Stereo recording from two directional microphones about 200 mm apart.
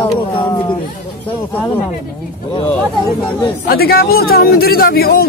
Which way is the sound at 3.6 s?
50° left (ahead or behind).